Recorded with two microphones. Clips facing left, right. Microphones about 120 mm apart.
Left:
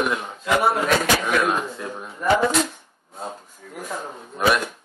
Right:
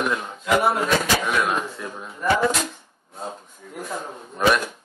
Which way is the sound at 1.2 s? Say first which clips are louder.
Left 2 dB; 5° left (ahead or behind).